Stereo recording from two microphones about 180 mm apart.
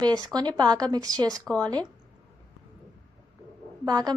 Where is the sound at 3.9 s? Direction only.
20° right (ahead or behind).